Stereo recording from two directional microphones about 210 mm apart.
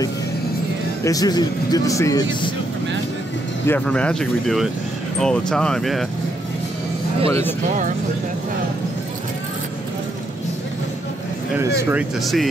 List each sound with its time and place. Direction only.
1.0 s speech: 15° left (ahead or behind)
3.6 s speech: 5° left (ahead or behind)
7.2 s speech: 25° right (ahead or behind)
11.6 s speech: 5° right (ahead or behind)